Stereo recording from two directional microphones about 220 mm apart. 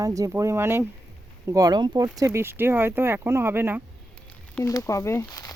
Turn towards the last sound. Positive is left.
turn(degrees=15)  # may be behind; listen again after turning